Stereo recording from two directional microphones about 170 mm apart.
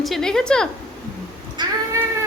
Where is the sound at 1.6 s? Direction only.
25° right (ahead or behind).